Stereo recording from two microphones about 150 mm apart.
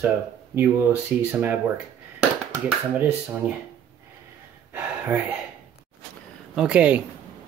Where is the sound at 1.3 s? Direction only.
15° right (ahead or behind).